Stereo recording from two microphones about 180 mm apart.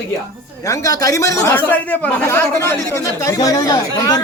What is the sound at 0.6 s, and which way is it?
A man's voice, 20° left (ahead or behind).